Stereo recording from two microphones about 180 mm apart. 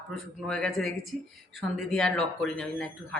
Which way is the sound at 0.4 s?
5° left (ahead or behind).